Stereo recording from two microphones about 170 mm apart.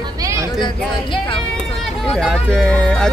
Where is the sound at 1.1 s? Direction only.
30° left (ahead or behind).